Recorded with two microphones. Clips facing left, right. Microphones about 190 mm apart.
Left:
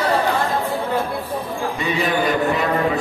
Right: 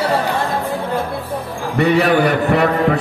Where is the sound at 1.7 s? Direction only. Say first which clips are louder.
Right 9 dB; 65° right (ahead or behind).